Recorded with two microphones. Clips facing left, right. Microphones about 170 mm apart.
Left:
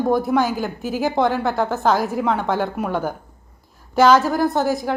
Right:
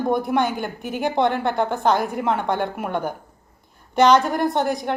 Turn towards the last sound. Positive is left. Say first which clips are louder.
# left 2 dB
turn(degrees=0)  # may be behind; listen again after turning